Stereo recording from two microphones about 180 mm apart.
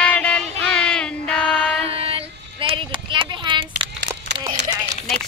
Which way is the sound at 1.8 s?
30° right (ahead or behind).